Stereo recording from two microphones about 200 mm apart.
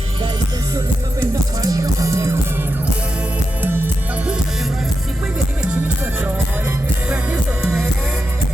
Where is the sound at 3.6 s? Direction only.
10° right (ahead or behind).